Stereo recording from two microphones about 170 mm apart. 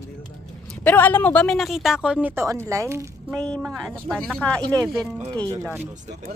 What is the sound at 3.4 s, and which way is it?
Speech, 5° left (ahead or behind).